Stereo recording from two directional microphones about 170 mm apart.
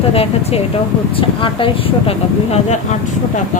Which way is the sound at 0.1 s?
35° left (ahead or behind).